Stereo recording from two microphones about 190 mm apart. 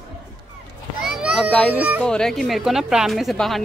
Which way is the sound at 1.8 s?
10° right (ahead or behind).